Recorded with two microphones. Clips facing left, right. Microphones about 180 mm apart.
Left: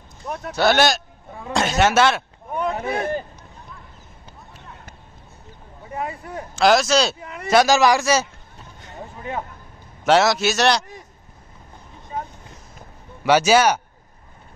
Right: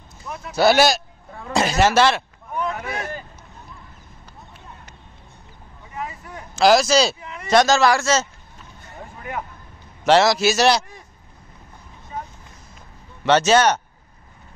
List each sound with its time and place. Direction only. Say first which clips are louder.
0.6 s a man's voice: right 2 dB; 5° right (ahead or behind)
2.5 s a sound: left 3 dB; 30° left (ahead or behind)
5.9 s a sound: left 4 dB; 35° left (ahead or behind)
6.5 s a man's voice: right 1 dB; centre (ahead or behind)
7.2 s a man's voice: left 1 dB; 45° left (ahead or behind)
7.4 s a man's voice: even; 10° left (ahead or behind)
10.0 s a man's voice: right 1 dB; centre (ahead or behind)
13.2 s a man's voice: even; 10° left (ahead or behind)